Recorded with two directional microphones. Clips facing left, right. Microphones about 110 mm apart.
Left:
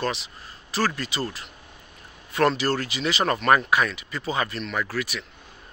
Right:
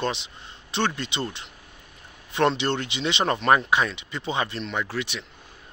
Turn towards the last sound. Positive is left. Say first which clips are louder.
# left 1 dB
turn(degrees=-25)  # may be behind; listen again after turning